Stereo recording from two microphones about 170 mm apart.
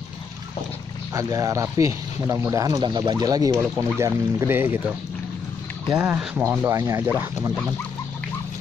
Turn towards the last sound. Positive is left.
turn(degrees=-15)  # may be behind; listen again after turning